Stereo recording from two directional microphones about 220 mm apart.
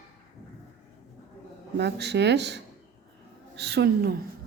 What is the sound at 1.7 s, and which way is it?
Speech, 50° right (ahead or behind).